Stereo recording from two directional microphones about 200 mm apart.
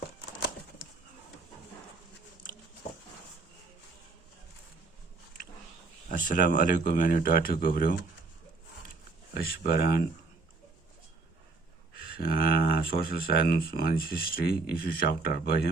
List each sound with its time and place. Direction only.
6.1 s speech: 40° left (ahead or behind)
9.3 s speech: 50° left (ahead or behind)
12.2 s speech: 45° left (ahead or behind)